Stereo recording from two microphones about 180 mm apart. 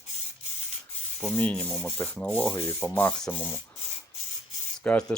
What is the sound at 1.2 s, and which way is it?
Speech, 10° left (ahead or behind).